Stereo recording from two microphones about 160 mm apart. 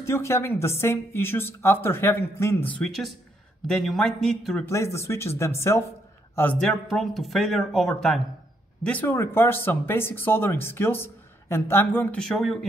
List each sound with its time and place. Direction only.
0.0 s speech: 15° left (ahead or behind); by 4.6 s centre (ahead or behind)
4.6 s speech: 15° left (ahead or behind); by 12.5 s centre (ahead or behind)